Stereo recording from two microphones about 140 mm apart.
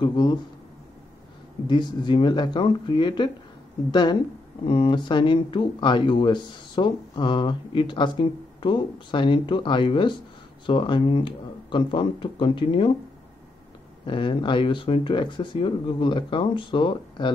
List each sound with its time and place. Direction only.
0.0 s speech: 30° left (ahead or behind)
1.7 s speech: 35° left (ahead or behind)
14.0 s speech: 35° left (ahead or behind)